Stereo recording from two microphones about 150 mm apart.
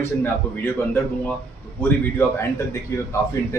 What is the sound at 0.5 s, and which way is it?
Speech, 15° left (ahead or behind).